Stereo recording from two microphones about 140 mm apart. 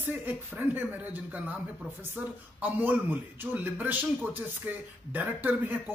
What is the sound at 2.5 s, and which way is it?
Speech, 10° right (ahead or behind).